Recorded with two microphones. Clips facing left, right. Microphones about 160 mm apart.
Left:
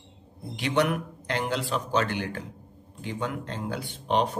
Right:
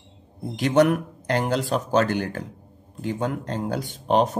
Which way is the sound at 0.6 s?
45° right (ahead or behind).